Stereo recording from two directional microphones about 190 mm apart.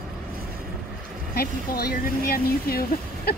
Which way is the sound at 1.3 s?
55° left (ahead or behind).